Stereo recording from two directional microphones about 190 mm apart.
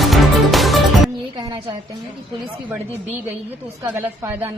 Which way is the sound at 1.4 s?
20° right (ahead or behind).